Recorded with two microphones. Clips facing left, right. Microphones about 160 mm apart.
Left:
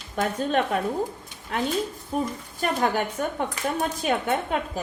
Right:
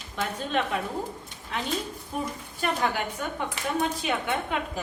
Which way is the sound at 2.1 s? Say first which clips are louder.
Left 5 dB; 40° left (ahead or behind).